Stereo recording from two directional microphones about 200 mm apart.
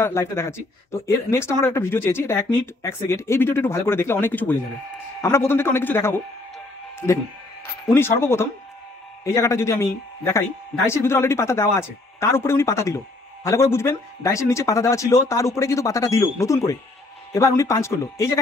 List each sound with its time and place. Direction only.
0.0 s speech: 10° left (ahead or behind)
7.9 s speech: 10° left (ahead or behind)